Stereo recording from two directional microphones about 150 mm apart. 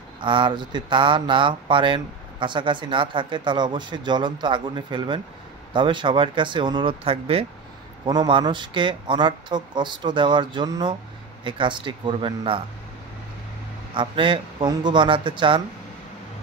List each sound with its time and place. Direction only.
0.2 s speech: 35° right (ahead or behind)
13.9 s speech: 35° right (ahead or behind)